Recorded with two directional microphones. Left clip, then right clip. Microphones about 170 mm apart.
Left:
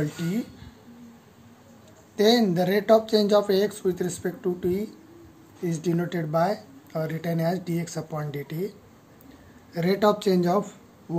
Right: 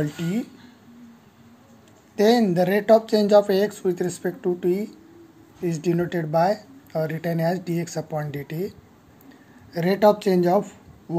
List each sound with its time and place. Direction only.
2.1 s speech: 20° right (ahead or behind)